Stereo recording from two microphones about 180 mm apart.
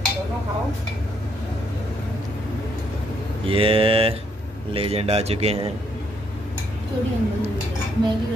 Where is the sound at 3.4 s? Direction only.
30° right (ahead or behind).